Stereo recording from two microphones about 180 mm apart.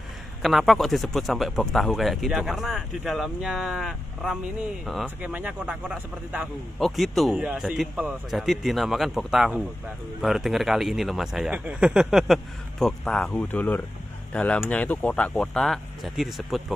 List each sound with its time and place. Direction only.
0.4 s speech: centre (ahead or behind)